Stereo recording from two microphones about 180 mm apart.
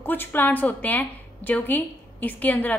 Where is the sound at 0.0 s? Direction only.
10° left (ahead or behind).